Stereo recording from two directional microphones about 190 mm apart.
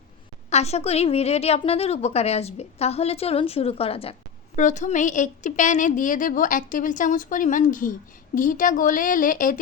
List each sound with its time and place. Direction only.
0.5 s a woman's voice: 35° left (ahead or behind)
4.5 s a woman's voice: 40° left (ahead or behind)